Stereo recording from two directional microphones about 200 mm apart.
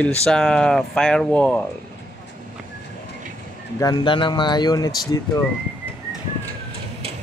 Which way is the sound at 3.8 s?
20° left (ahead or behind).